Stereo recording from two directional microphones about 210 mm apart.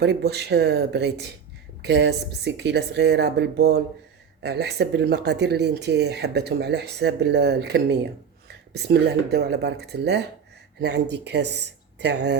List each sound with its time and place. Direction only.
0.0 s speech: 50° right (ahead or behind)